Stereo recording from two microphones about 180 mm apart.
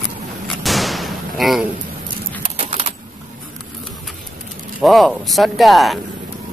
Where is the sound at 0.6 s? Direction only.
Centre (ahead or behind).